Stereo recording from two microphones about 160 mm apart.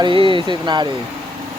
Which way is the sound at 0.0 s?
30° right (ahead or behind).